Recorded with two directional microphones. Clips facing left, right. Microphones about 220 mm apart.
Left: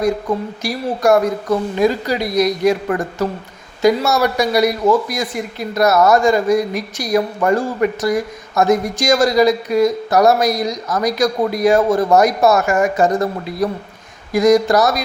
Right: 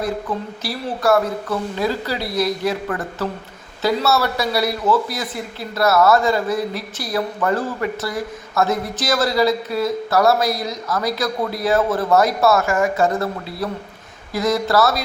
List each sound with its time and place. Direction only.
0.6 s speech: 15° left (ahead or behind)